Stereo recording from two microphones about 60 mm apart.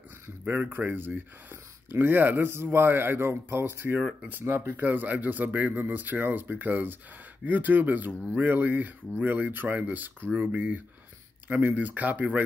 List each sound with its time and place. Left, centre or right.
0.5 s speech: right